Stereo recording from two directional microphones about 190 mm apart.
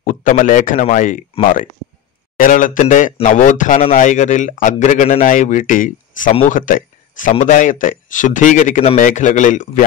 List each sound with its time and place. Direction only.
0.0 s speech: 45° left (ahead or behind)
2.3 s speech: 45° left (ahead or behind)